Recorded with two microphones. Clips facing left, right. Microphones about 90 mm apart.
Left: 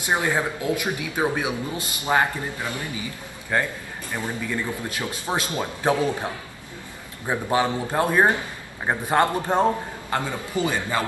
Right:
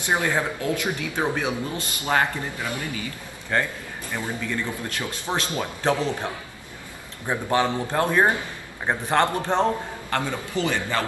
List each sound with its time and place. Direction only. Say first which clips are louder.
0.0 s speech: even; 20° left (ahead or behind)